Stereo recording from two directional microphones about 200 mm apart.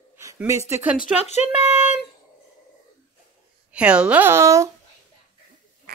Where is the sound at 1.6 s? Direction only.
35° left (ahead or behind).